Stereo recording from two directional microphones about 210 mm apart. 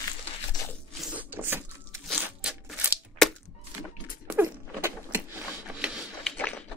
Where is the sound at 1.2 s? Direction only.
10° right (ahead or behind).